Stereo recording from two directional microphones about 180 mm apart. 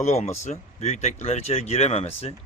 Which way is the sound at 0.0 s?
40° left (ahead or behind).